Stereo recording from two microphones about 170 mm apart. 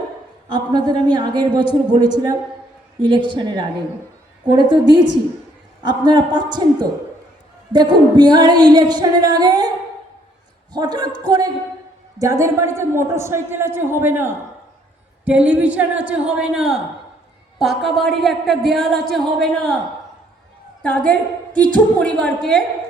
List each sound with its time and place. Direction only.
0.4 s singing: 25° right (ahead or behind)
12.2 s a man's voice: 20° right (ahead or behind); by 19.7 s 5° left (ahead or behind)
20.8 s a woman's voice: 5° left (ahead or behind)